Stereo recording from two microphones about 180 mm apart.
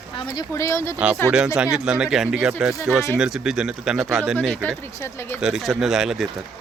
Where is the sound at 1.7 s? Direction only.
5° right (ahead or behind).